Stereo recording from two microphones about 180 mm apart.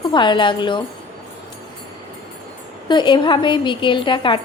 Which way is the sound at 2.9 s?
25° left (ahead or behind).